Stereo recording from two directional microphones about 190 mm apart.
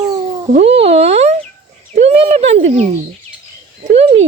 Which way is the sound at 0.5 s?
35° right (ahead or behind).